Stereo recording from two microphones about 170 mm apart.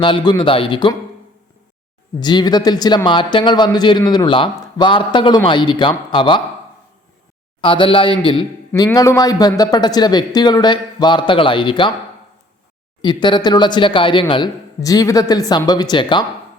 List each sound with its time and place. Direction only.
0.0 s a man's voice: 30° left (ahead or behind)
2.2 s a man's voice: 25° left (ahead or behind)
7.6 s a man's voice: 30° left (ahead or behind)
13.0 s a man's voice: 25° left (ahead or behind)